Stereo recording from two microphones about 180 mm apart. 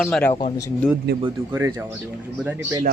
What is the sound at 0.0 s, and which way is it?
Speech, 5° left (ahead or behind).